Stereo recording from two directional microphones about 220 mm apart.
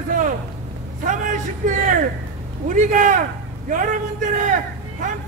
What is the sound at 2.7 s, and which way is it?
Speech, 35° right (ahead or behind).